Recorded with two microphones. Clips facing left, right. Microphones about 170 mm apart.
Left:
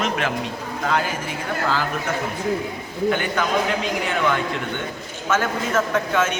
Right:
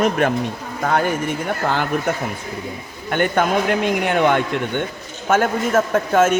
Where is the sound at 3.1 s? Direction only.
55° right (ahead or behind).